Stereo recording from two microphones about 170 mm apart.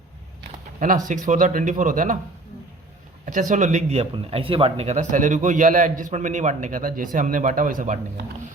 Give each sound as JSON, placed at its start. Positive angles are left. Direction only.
{"t": 1.0, "sound": "speech", "side_deg": -50}
{"t": 3.2, "sound": "speech", "side_deg": -50}